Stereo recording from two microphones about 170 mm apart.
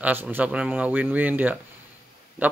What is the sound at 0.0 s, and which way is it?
Speech, 10° right (ahead or behind).